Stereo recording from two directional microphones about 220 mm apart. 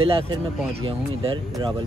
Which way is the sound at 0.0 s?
25° right (ahead or behind).